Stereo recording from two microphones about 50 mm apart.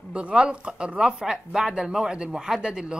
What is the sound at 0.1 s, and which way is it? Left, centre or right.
Speech, right.